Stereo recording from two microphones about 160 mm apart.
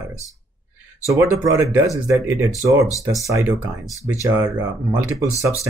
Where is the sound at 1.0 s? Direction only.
20° right (ahead or behind).